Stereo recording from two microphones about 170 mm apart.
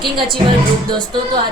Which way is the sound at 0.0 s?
30° right (ahead or behind).